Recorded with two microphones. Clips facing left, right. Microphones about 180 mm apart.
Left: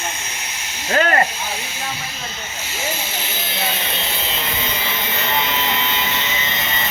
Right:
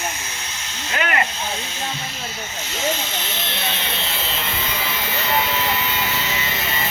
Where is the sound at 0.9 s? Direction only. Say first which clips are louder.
Left 6 dB; 40° left (ahead or behind).